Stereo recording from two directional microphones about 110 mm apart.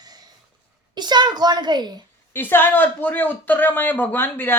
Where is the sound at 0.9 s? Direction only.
40° right (ahead or behind).